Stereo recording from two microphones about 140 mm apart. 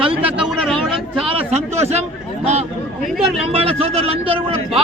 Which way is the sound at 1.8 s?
50° right (ahead or behind).